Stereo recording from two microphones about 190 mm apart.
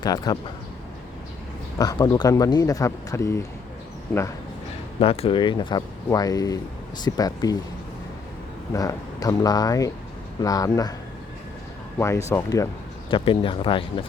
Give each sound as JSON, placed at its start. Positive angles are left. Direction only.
{"t": 0.0, "sound": "speech", "side_deg": 20}
{"t": 1.8, "sound": "speech", "side_deg": 20}
{"t": 4.9, "sound": "speech", "side_deg": 30}
{"t": 8.7, "sound": "speech", "side_deg": 20}
{"t": 11.9, "sound": "speech", "side_deg": 15}
{"t": 13.1, "sound": "speech", "side_deg": 25}